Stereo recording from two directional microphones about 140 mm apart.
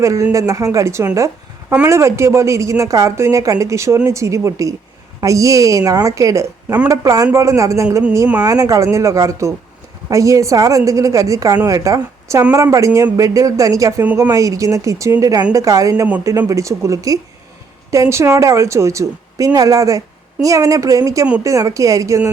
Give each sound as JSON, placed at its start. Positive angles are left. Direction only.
{"t": 0.0, "sound": "a woman's voice", "side_deg": -20}
{"t": 14.0, "sound": "speech", "side_deg": -10}
{"t": 14.3, "sound": "a woman's voice", "side_deg": -25}